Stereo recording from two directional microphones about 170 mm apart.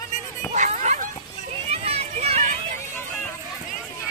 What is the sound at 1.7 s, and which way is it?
Run, 35° right (ahead or behind).